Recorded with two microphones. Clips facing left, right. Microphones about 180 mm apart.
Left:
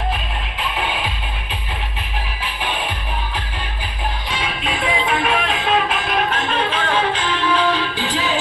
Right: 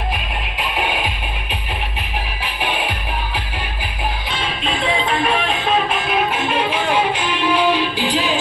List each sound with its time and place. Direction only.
0.6 s music: 15° right (ahead or behind)
2.6 s music: 15° right (ahead or behind)
4.6 s music: centre (ahead or behind)